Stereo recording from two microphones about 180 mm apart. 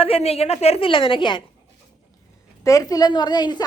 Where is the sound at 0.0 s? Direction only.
35° left (ahead or behind).